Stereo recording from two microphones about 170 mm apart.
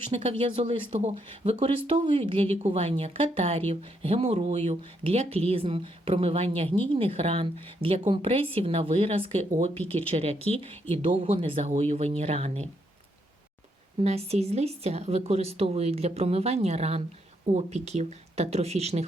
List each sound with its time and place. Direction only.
0.1 s speech: 35° right (ahead or behind)
14.0 s speech: 40° right (ahead or behind)